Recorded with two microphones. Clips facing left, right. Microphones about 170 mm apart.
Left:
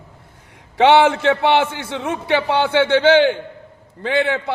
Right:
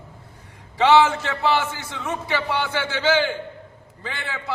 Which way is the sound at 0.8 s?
65° left (ahead or behind).